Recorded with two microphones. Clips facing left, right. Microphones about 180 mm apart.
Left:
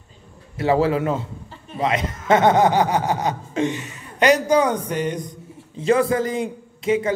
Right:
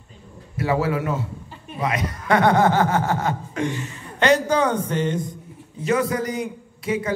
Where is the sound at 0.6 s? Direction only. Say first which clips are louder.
Left 4 dB; 25° left (ahead or behind).